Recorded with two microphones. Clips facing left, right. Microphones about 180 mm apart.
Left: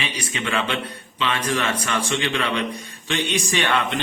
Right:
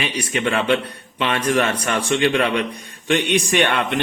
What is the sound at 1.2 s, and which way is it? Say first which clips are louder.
Speech: right 4 dB; 60° right (ahead or behind).